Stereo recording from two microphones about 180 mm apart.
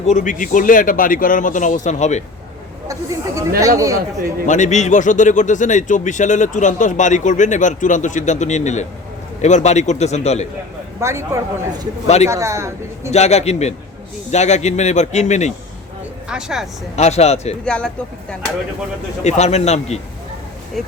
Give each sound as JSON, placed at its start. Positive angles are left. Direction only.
{"t": 0.0, "sound": "speech", "side_deg": 40}
{"t": 2.8, "sound": "speech", "side_deg": -20}
{"t": 4.4, "sound": "speech", "side_deg": 40}
{"t": 11.0, "sound": "speech", "side_deg": -15}
{"t": 12.0, "sound": "speech", "side_deg": 35}
{"t": 12.3, "sound": "speech", "side_deg": -15}
{"t": 13.1, "sound": "speech", "side_deg": 35}
{"t": 16.3, "sound": "speech", "side_deg": -5}
{"t": 16.9, "sound": "speech", "side_deg": 35}
{"t": 17.7, "sound": "speech", "side_deg": 5}
{"t": 19.2, "sound": "speech", "side_deg": 35}
{"t": 20.8, "sound": "speech", "side_deg": 0}